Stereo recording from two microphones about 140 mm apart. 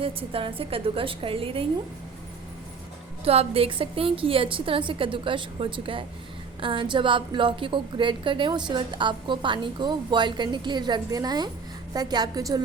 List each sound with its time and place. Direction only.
0.0 s a woman's voice: 40° right (ahead or behind)
3.2 s a woman's voice: 45° right (ahead or behind); by 12.6 s 25° right (ahead or behind)